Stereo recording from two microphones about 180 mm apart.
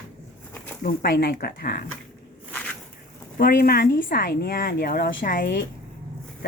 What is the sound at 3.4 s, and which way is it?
A woman's voice, 55° left (ahead or behind).